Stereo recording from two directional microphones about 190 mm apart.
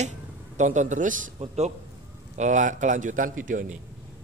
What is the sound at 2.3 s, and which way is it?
A man's voice, 40° right (ahead or behind).